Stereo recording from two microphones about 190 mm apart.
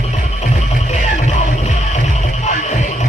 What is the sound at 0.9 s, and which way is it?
Music, 35° left (ahead or behind).